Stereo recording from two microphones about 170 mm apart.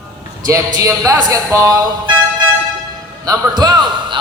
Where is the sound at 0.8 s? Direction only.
20° right (ahead or behind).